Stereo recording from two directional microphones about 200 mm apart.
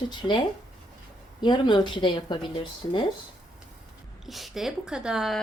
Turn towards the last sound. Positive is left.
turn(degrees=0)  # may be behind; listen again after turning